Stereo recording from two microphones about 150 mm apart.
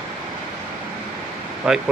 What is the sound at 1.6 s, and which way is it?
Speech, 5° right (ahead or behind).